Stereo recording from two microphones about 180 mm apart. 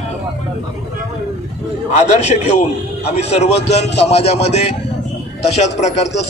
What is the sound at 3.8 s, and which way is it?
Speech, 70° left (ahead or behind).